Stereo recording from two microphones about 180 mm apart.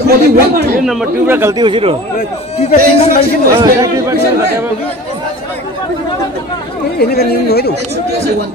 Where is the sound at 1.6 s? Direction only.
30° right (ahead or behind).